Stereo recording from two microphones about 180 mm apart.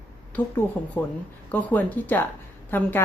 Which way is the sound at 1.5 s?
10° left (ahead or behind).